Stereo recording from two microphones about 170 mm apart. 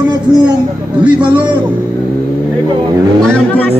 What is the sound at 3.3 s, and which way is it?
Speech, 10° left (ahead or behind).